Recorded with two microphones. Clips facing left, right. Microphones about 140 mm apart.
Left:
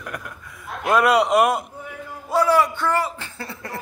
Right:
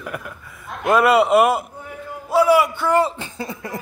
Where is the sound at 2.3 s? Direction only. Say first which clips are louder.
Right 3 dB; 10° right (ahead or behind).